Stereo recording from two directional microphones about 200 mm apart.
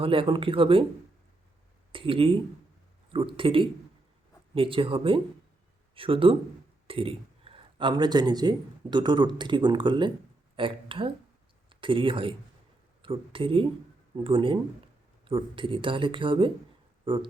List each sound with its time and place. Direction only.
0.0 s speech: 25° right (ahead or behind)
1.9 s speech: 25° right (ahead or behind)